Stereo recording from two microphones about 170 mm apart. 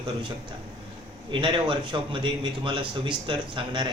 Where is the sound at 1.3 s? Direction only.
30° right (ahead or behind).